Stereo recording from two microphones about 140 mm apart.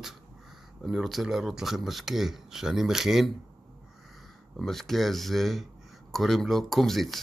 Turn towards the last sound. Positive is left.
turn(degrees=0)  # may be behind; listen again after turning